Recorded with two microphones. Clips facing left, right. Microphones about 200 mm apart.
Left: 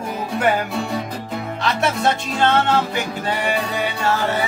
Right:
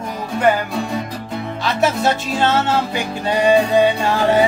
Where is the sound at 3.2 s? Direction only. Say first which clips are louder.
Right 11 dB; 15° right (ahead or behind).